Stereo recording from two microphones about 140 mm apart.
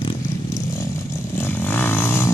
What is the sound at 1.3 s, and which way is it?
Vehicle, 15° left (ahead or behind).